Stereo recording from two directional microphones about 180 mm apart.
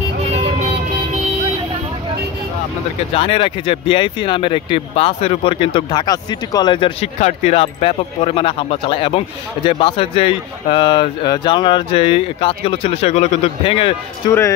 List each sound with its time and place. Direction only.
3.2 s speech: 30° left (ahead or behind)